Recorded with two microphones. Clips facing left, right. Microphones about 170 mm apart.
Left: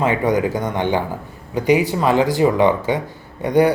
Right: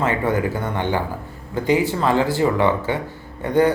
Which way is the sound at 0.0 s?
15° left (ahead or behind).